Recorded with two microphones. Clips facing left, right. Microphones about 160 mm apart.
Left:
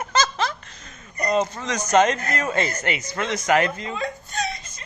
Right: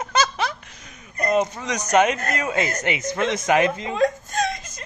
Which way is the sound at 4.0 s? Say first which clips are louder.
Right 8 dB; 45° right (ahead or behind).